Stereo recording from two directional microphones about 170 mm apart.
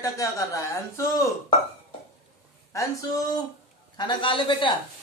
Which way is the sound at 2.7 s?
20° left (ahead or behind).